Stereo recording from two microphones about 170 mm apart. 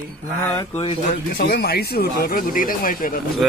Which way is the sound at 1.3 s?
65° left (ahead or behind).